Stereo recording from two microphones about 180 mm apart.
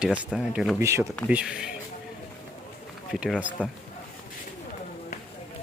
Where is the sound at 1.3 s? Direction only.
5° right (ahead or behind).